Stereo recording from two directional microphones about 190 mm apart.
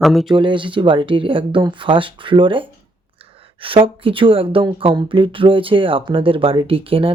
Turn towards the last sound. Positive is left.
turn(degrees=-30)  # may be behind; listen again after turning